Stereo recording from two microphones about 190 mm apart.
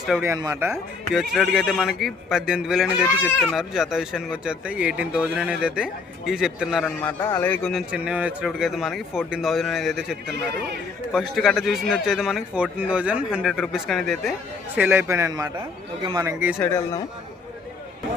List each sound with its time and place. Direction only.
0.2 s a man's voice: 15° right (ahead or behind)
1.1 s speech: centre (ahead or behind)
7.0 s speech: 10° left (ahead or behind)
10.3 s a man's voice: 60° right (ahead or behind)
11.1 s speech: centre (ahead or behind)
14.8 s a man's voice: 10° right (ahead or behind)
16.6 s speech: 15° left (ahead or behind)